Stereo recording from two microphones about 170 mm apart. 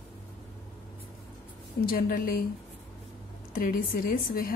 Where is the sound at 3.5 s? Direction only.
55° left (ahead or behind).